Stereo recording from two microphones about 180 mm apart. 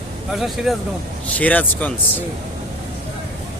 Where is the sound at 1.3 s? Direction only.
10° left (ahead or behind).